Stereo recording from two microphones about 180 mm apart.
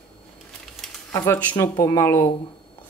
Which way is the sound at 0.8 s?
Centre (ahead or behind).